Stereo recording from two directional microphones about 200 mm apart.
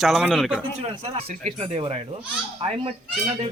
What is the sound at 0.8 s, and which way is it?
Speech, 35° right (ahead or behind).